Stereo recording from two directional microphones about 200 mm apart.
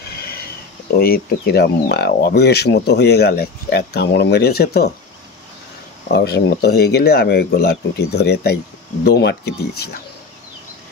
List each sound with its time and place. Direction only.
0.1 s a sound: 50° left (ahead or behind)
0.8 s speech: 50° left (ahead or behind)
6.0 s speech: 55° left (ahead or behind)